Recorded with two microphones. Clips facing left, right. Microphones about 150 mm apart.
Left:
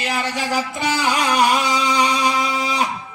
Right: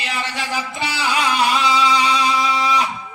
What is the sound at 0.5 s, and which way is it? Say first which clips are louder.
Music: left 5 dB; 45° left (ahead or behind).